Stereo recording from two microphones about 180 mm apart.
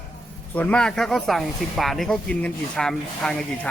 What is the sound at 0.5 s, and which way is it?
Speech, 10° left (ahead or behind).